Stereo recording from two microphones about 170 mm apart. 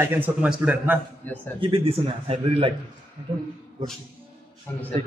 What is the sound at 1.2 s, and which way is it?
Speech, 10° left (ahead or behind).